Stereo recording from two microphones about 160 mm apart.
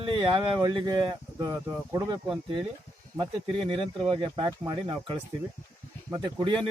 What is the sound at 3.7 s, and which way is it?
Speech, 35° right (ahead or behind).